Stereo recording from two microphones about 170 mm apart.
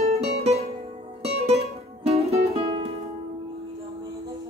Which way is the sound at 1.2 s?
40° right (ahead or behind).